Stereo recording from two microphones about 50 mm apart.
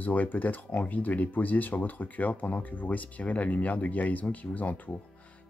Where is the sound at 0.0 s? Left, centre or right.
Left.